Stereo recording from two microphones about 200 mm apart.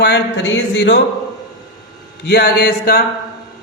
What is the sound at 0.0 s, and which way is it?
A man's voice, 60° left (ahead or behind).